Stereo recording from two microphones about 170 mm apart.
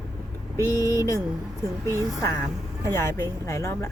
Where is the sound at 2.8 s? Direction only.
15° left (ahead or behind).